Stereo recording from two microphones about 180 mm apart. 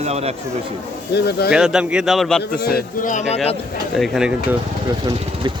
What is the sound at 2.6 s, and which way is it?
Speech, 60° left (ahead or behind).